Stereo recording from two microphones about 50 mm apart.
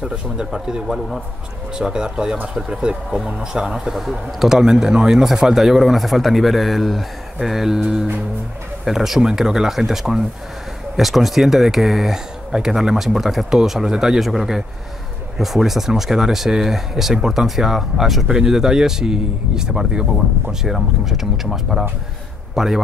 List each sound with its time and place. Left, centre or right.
0.5 s speech: centre